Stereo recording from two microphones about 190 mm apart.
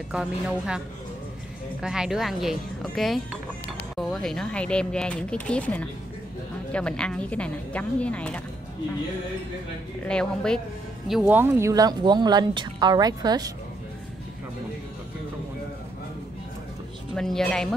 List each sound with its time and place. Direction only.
0.1 s speech: 5° right (ahead or behind)
10.0 s speech: 5° left (ahead or behind); by 13.5 s 20° right (ahead or behind)
17.1 s speech: centre (ahead or behind)